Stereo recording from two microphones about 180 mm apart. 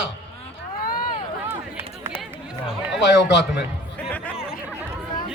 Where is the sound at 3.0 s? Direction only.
75° left (ahead or behind).